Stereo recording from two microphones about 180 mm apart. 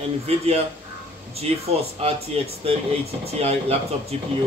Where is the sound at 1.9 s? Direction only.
35° right (ahead or behind).